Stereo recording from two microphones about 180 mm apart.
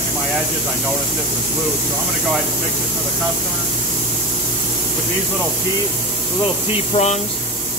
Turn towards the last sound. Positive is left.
turn(degrees=40)  # may be behind; listen again after turning